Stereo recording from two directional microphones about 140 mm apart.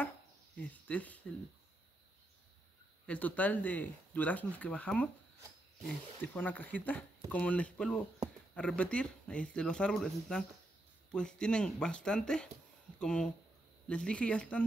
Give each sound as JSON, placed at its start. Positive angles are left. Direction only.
{"t": 0.6, "sound": "speech", "side_deg": 10}
{"t": 3.1, "sound": "speech", "side_deg": 10}
{"t": 6.2, "sound": "speech", "side_deg": 10}